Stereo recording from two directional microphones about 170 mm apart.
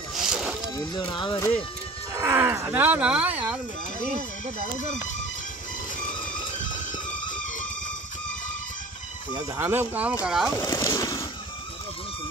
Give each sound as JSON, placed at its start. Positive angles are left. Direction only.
{"t": 0.1, "sound": "boat", "side_deg": -5}
{"t": 0.7, "sound": "speech", "side_deg": 25}
{"t": 2.1, "sound": "speech", "side_deg": -15}
{"t": 9.3, "sound": "speech", "side_deg": -15}
{"t": 10.6, "sound": "a sound", "side_deg": 20}